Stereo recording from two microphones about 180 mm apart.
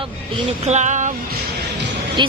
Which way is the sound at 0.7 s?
40° right (ahead or behind).